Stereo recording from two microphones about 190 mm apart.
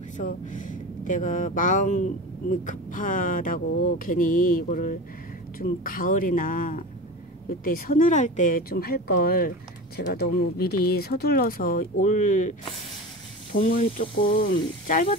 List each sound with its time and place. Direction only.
0.2 s speech: 45° left (ahead or behind)